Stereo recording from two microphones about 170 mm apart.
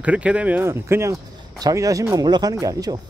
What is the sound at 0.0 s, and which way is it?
Speech, 10° right (ahead or behind).